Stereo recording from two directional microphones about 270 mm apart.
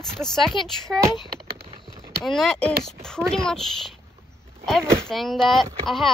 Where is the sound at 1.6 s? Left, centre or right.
Right.